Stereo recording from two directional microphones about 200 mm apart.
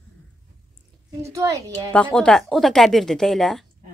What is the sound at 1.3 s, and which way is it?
Speech, 15° right (ahead or behind).